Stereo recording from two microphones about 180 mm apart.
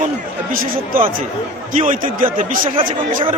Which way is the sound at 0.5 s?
50° right (ahead or behind).